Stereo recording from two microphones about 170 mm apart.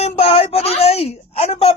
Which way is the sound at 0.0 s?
35° left (ahead or behind).